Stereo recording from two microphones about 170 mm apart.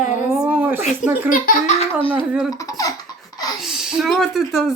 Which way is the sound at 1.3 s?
55° left (ahead or behind).